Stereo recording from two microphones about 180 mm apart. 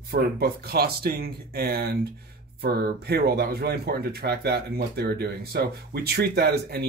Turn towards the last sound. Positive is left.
turn(degrees=-65)  # may be behind; listen again after turning